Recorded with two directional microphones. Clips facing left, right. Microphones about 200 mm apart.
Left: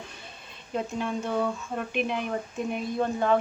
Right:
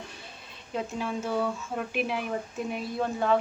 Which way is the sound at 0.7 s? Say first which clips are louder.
Left 2 dB; centre (ahead or behind).